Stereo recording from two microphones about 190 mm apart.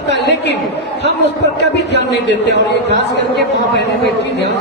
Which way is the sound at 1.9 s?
65° left (ahead or behind).